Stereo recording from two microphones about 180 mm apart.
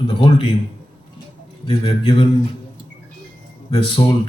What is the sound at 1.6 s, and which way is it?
Speech, 30° left (ahead or behind).